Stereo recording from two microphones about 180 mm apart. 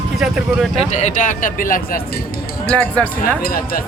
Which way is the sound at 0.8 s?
40° left (ahead or behind).